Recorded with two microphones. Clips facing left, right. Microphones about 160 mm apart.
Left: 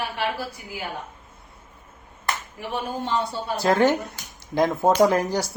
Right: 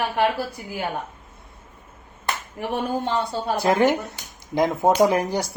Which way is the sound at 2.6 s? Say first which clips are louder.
Right 7 dB; 55° right (ahead or behind).